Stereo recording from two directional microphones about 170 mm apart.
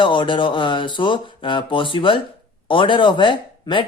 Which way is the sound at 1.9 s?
30° left (ahead or behind).